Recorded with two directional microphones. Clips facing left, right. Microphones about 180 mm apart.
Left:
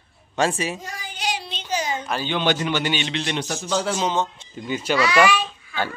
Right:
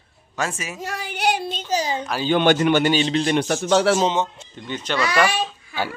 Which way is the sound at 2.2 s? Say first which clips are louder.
Right 7 dB; 50° right (ahead or behind).